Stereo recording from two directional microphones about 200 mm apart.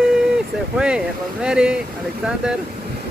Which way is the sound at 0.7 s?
5° right (ahead or behind).